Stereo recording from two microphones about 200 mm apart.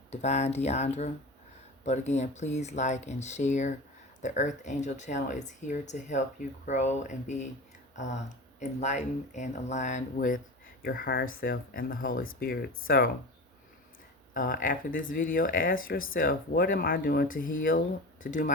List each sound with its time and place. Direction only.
0.1 s speech: 35° left (ahead or behind)
14.3 s speech: 45° left (ahead or behind)